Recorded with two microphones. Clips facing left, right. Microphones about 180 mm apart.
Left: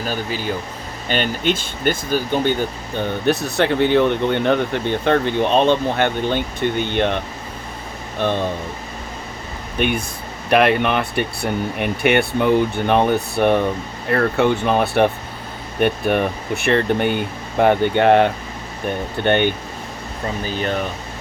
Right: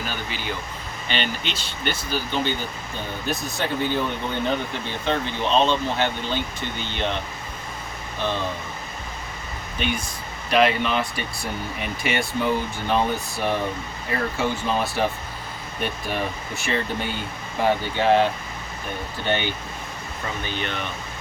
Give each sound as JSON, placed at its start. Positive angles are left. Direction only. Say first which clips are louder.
{"t": 0.0, "sound": "speech", "louder": "left 7 dB", "side_deg": 40}
{"t": 3.2, "sound": "speech", "louder": "left 9 dB", "side_deg": 70}
{"t": 9.7, "sound": "speech", "louder": "left 7 dB", "side_deg": 55}
{"t": 20.4, "sound": "speech", "louder": "left 9 dB", "side_deg": 40}